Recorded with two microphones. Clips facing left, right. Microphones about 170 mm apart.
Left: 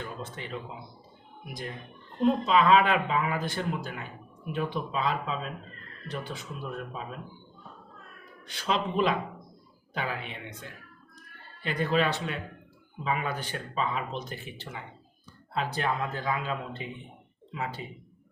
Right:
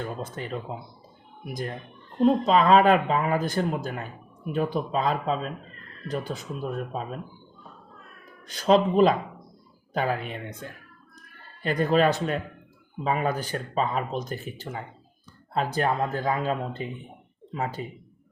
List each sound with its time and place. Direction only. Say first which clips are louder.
0.0 s speech: right 5 dB; 45° right (ahead or behind)
2.2 s speech: right 3 dB; 40° right (ahead or behind)
8.4 s speech: right 10 dB; 40° right (ahead or behind)
11.6 s speech: right 5 dB; 45° right (ahead or behind)